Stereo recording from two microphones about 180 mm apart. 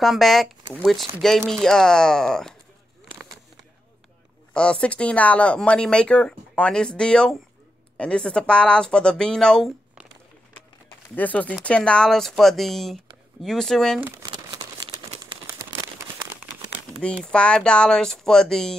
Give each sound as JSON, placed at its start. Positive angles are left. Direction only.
{"t": 0.0, "sound": "speech", "side_deg": 0}
{"t": 4.6, "sound": "speech", "side_deg": 5}
{"t": 11.1, "sound": "speech", "side_deg": 10}
{"t": 14.0, "sound": "crumpling", "side_deg": -20}
{"t": 17.0, "sound": "speech", "side_deg": 5}